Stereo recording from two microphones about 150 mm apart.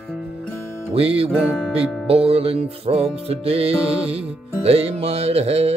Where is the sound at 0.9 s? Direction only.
40° right (ahead or behind).